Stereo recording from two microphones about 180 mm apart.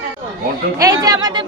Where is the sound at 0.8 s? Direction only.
20° right (ahead or behind).